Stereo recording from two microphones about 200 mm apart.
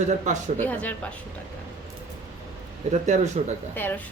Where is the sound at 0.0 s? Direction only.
35° right (ahead or behind).